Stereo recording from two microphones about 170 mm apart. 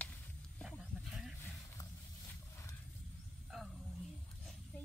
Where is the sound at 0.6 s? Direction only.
5° right (ahead or behind).